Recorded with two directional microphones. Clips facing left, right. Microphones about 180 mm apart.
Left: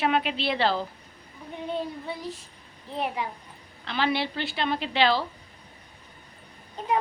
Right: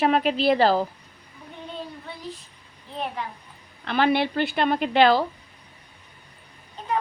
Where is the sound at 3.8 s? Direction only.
55° right (ahead or behind).